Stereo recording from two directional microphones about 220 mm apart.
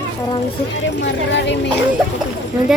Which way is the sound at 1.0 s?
55° left (ahead or behind).